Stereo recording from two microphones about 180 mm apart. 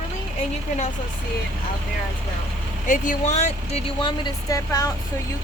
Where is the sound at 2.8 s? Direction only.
45° left (ahead or behind); by 4.9 s 15° left (ahead or behind).